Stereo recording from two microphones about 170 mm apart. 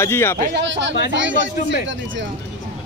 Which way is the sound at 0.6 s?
90° right.